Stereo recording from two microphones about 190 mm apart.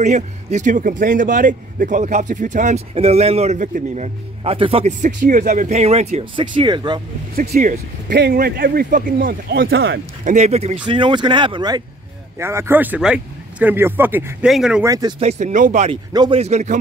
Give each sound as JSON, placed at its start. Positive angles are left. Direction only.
{"t": 0.0, "sound": "a man's voice", "side_deg": -40}
{"t": 7.5, "sound": "speech", "side_deg": -45}
{"t": 8.1, "sound": "speech", "side_deg": -60}
{"t": 9.7, "sound": "speech", "side_deg": -60}
{"t": 10.2, "sound": "speech", "side_deg": -35}
{"t": 12.4, "sound": "a man's voice", "side_deg": -15}
{"t": 14.9, "sound": "speech", "side_deg": -20}
{"t": 15.1, "sound": "a man's voice", "side_deg": -35}
{"t": 16.1, "sound": "speech", "side_deg": -20}
{"t": 16.3, "sound": "a man's voice", "side_deg": -35}